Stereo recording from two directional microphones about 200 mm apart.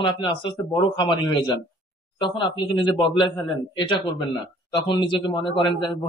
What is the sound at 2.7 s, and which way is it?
Speech, 25° left (ahead or behind).